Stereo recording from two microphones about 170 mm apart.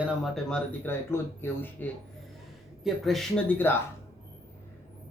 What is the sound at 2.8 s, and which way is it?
Speech, centre (ahead or behind).